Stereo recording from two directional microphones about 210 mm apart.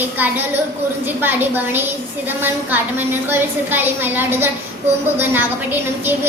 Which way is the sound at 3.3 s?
10° right (ahead or behind).